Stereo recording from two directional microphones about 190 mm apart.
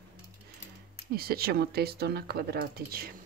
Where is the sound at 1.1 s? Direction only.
55° right (ahead or behind).